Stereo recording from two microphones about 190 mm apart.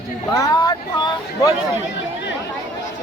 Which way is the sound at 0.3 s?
20° left (ahead or behind).